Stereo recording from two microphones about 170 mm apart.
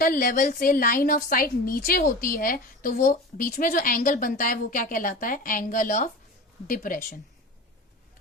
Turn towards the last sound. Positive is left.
turn(degrees=55)  # may be behind; listen again after turning